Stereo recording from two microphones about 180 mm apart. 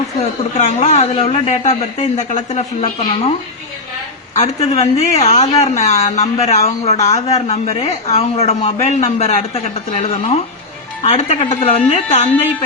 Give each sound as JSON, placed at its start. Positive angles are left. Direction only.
{"t": 0.2, "sound": "speech", "side_deg": 40}
{"t": 4.4, "sound": "speech", "side_deg": 35}